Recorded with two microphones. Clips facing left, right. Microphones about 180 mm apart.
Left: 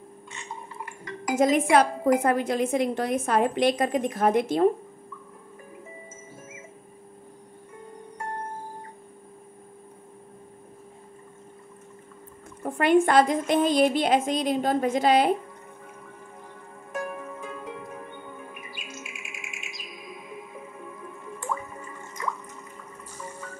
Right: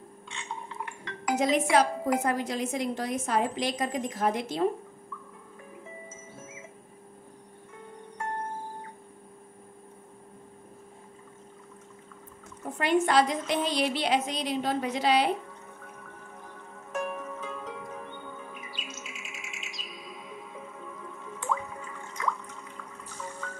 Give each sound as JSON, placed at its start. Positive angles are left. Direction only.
{"t": 1.3, "sound": "a woman's voice", "side_deg": 50}
{"t": 12.6, "sound": "a woman's voice", "side_deg": 55}
{"t": 16.9, "sound": "music", "side_deg": 10}